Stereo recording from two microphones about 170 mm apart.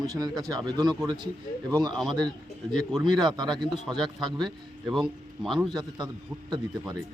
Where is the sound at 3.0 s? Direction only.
25° right (ahead or behind).